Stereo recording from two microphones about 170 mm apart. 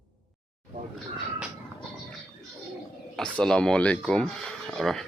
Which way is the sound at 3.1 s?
5° left (ahead or behind).